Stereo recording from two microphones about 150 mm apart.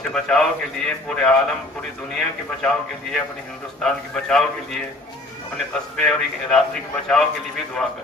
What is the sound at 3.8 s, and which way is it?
A man's voice, 5° left (ahead or behind).